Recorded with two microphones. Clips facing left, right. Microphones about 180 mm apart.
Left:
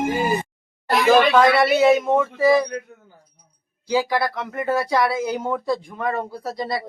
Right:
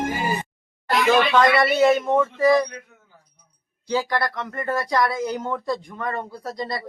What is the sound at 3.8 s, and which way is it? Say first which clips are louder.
Speech: left 3 dB; 5° left (ahead or behind).